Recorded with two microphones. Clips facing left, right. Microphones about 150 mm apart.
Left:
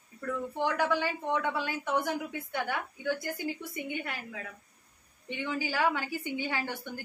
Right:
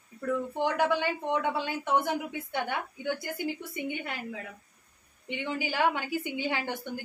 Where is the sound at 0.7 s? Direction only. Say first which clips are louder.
Right 2 dB; 20° right (ahead or behind).